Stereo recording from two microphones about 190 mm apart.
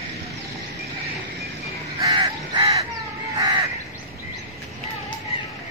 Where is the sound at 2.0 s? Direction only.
20° right (ahead or behind).